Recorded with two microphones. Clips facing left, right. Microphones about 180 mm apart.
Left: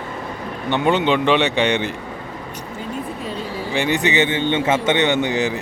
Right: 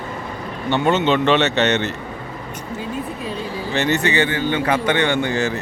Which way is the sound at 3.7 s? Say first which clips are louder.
Even; 15° left (ahead or behind).